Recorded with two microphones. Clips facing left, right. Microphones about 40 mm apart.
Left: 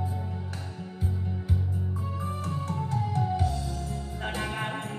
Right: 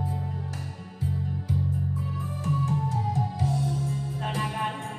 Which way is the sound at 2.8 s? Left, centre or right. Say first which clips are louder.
Right 1 dB; left.